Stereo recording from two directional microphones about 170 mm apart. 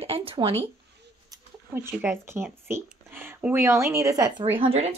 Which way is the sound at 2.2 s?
15° right (ahead or behind).